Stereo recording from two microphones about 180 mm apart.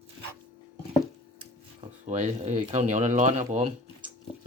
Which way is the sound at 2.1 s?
40° right (ahead or behind).